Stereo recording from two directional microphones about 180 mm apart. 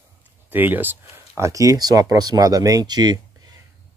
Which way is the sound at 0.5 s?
10° right (ahead or behind).